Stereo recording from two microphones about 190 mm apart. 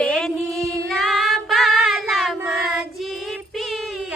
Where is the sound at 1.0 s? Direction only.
Centre (ahead or behind).